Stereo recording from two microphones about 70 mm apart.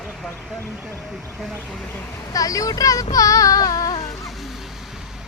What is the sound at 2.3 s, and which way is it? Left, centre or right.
Speech, left.